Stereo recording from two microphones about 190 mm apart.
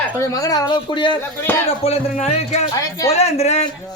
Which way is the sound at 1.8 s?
35° left (ahead or behind).